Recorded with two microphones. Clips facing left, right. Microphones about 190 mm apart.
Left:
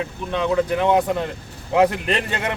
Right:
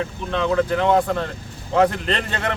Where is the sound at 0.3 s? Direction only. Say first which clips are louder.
Even; 15° left (ahead or behind).